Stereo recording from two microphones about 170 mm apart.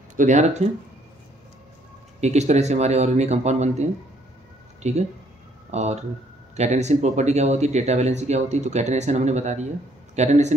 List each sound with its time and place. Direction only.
0.1 s speech: 45° right (ahead or behind)
2.1 s speech: 40° right (ahead or behind)